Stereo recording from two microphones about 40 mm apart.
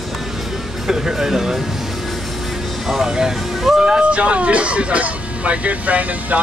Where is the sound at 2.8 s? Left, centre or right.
Centre.